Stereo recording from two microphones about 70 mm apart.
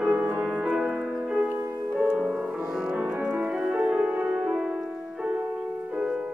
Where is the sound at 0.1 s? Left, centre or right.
Right.